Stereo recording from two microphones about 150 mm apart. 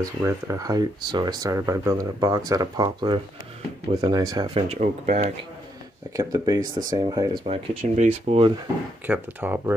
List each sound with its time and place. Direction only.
0.0 s speech: 20° right (ahead or behind)
4.6 s speech: 50° right (ahead or behind)
6.1 s speech: 25° right (ahead or behind)
7.4 s speech: 50° right (ahead or behind)
9.0 s speech: 10° right (ahead or behind)